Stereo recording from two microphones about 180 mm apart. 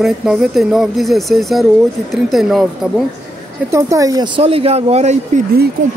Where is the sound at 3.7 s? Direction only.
15° right (ahead or behind); by 5.4 s 40° right (ahead or behind).